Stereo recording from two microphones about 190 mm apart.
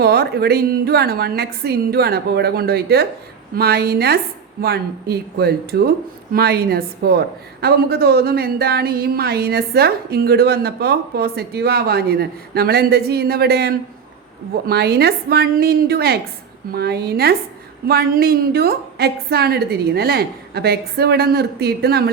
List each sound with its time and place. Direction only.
0.0 s a woman's voice: 55° right (ahead or behind)